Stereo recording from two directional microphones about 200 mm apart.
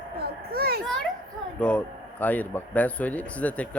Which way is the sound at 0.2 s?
50° right (ahead or behind).